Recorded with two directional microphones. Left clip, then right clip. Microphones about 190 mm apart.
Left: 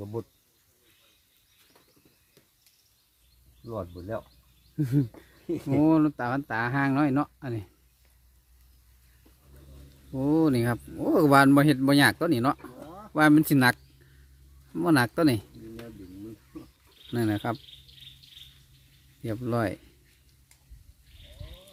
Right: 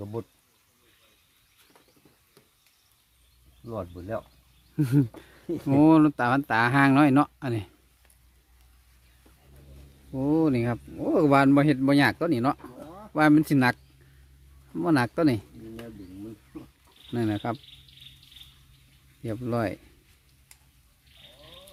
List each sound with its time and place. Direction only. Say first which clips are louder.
0.0 s speech: even; 20° right (ahead or behind)
3.6 s speech: right 1 dB; 20° right (ahead or behind)
4.8 s speech: right 3 dB; 35° right (ahead or behind)
10.1 s speech: even; 5° left (ahead or behind)
17.1 s speech: even; 5° left (ahead or behind)
19.2 s speech: even; 5° left (ahead or behind)